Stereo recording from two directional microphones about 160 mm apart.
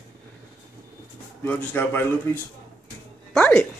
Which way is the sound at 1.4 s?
10° left (ahead or behind).